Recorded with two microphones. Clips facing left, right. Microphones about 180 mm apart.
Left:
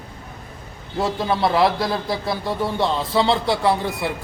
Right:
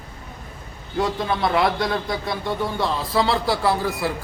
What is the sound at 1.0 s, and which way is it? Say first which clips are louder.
Speech: left 2 dB; 30° left (ahead or behind).